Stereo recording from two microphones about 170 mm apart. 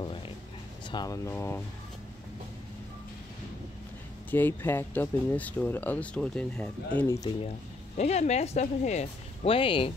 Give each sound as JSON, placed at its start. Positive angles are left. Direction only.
{"t": 0.0, "sound": "a sound", "side_deg": 30}
{"t": 0.8, "sound": "speech", "side_deg": 25}
{"t": 4.3, "sound": "speech", "side_deg": 10}
{"t": 8.0, "sound": "speech", "side_deg": 40}